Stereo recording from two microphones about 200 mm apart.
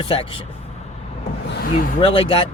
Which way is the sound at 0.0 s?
25° left (ahead or behind).